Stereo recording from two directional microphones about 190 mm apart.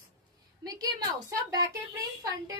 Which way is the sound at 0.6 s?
20° right (ahead or behind).